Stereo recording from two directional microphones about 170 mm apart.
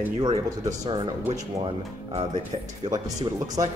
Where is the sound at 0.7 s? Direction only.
25° right (ahead or behind).